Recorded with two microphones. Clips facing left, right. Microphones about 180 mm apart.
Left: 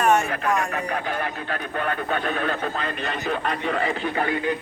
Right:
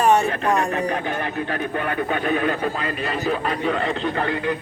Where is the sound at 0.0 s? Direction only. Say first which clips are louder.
Right 3 dB; 30° right (ahead or behind).